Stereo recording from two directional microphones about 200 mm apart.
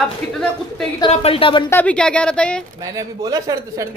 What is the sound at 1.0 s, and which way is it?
Speech, 30° left (ahead or behind).